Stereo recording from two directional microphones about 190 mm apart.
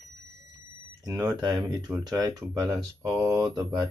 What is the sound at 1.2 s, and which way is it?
Speech, 20° right (ahead or behind).